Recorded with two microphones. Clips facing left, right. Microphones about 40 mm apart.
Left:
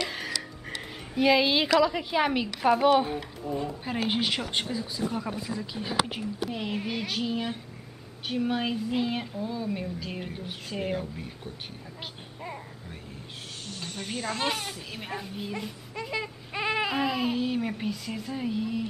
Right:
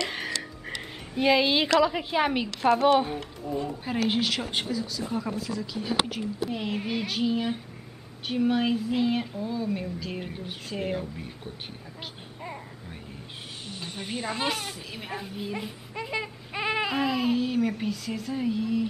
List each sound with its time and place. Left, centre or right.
0.1 s a sound: centre
2.6 s speech: centre
4.6 s speech: left
6.4 s speech: centre
12.4 s vehicle: centre
13.7 s speech: centre
14.5 s speech: centre
15.5 s baby cry: centre